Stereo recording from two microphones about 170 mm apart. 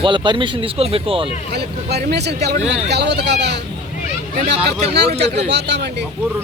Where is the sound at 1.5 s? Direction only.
75° right (ahead or behind).